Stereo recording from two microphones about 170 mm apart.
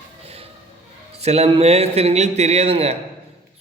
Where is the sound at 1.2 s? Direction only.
40° right (ahead or behind).